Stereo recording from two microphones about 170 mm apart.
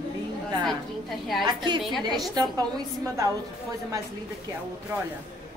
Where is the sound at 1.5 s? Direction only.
25° right (ahead or behind).